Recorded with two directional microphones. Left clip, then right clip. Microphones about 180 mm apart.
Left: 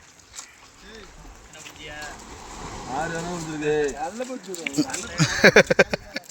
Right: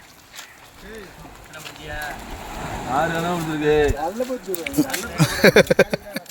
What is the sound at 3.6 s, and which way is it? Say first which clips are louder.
Speech: right 5 dB; 15° left (ahead or behind).